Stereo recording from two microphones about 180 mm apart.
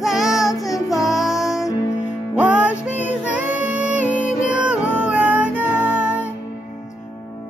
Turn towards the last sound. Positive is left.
turn(degrees=-10)  # may be behind; listen again after turning